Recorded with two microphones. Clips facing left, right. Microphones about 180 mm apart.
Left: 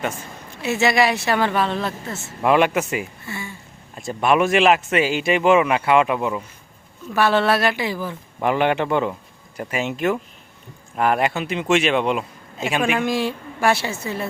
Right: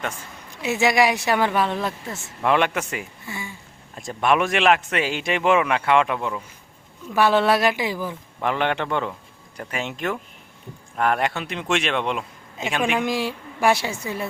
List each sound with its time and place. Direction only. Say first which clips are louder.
0.6 s speech: left 1 dB; 15° right (ahead or behind)
2.4 s a man's voice: left 4 dB; 10° left (ahead or behind)
3.2 s speech: left 2 dB; 15° right (ahead or behind)
3.9 s a man's voice: left 2 dB; centre (ahead or behind)
7.1 s speech: even; 15° right (ahead or behind)
8.4 s a man's voice: left 4 dB; 10° left (ahead or behind)
13.0 s speech: left 2 dB; 10° right (ahead or behind)